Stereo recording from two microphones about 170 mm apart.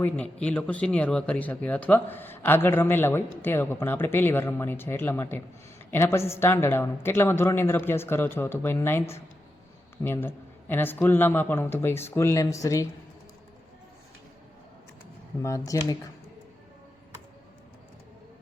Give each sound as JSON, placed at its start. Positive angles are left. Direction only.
{"t": 0.0, "sound": "speech", "side_deg": 5}
{"t": 15.4, "sound": "speech", "side_deg": 15}